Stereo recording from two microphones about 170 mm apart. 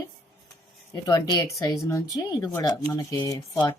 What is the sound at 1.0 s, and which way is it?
Speech, 20° left (ahead or behind).